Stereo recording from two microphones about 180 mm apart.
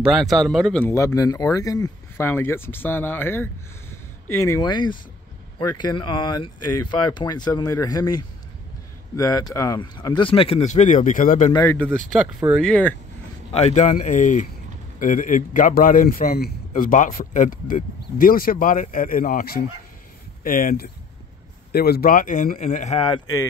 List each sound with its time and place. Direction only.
0.0 s speech: centre (ahead or behind)
0.9 s speech: 20° left (ahead or behind)
4.5 s speech: 25° left (ahead or behind); by 11.5 s 45° left (ahead or behind)
11.5 s speech: 10° left (ahead or behind)
13.5 s a man's voice: 35° left (ahead or behind)